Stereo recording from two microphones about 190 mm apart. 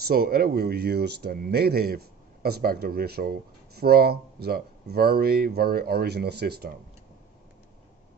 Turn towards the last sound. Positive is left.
turn(degrees=-55)  # may be behind; listen again after turning